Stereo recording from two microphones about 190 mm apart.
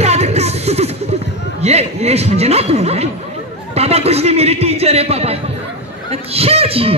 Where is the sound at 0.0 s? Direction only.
35° right (ahead or behind).